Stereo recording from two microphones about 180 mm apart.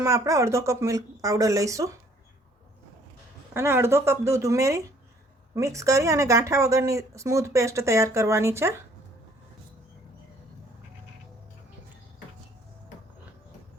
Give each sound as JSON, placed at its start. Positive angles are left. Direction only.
{"t": 0.0, "sound": "a woman's voice", "side_deg": -15}
{"t": 3.5, "sound": "a woman's voice", "side_deg": -15}